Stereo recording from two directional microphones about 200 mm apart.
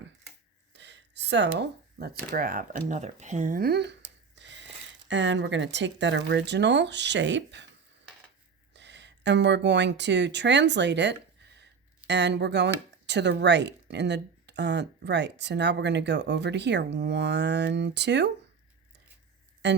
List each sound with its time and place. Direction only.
0.7 s speech: 60° right (ahead or behind)
8.7 s speech: 60° right (ahead or behind)
19.6 s speech: 60° right (ahead or behind)